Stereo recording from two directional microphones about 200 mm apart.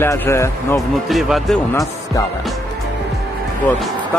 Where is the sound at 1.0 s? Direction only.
Centre (ahead or behind).